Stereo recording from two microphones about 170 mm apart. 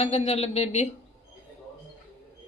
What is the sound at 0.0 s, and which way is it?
Speech, 35° left (ahead or behind).